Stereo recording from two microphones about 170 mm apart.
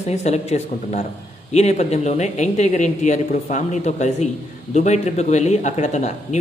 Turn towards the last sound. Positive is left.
turn(degrees=45)  # may be behind; listen again after turning